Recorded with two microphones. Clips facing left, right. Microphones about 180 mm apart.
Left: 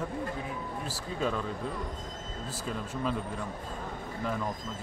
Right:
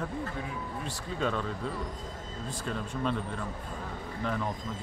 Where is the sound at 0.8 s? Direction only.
5° left (ahead or behind).